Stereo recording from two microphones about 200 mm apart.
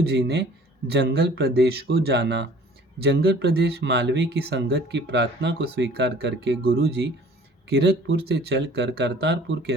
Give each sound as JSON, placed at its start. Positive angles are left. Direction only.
{"t": 0.0, "sound": "speech", "side_deg": -55}